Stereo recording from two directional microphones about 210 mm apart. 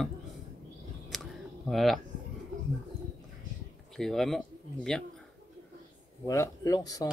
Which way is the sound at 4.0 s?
Centre (ahead or behind).